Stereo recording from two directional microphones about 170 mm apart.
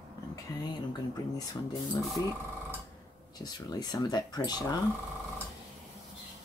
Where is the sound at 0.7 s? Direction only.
25° left (ahead or behind).